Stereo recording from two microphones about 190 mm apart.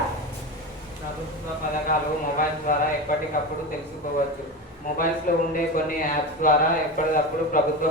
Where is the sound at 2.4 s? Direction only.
45° left (ahead or behind).